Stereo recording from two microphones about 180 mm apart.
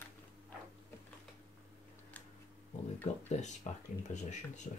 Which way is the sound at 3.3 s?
40° left (ahead or behind).